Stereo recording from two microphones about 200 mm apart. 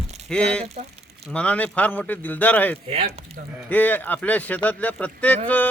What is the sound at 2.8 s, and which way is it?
Speech, 30° right (ahead or behind).